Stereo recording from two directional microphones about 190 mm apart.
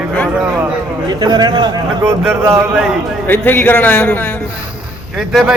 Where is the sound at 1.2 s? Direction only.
25° right (ahead or behind).